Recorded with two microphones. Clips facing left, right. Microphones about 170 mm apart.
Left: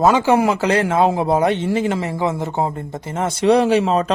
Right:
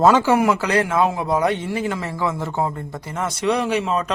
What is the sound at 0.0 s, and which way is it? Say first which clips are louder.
Speech: left 1 dB; 10° left (ahead or behind).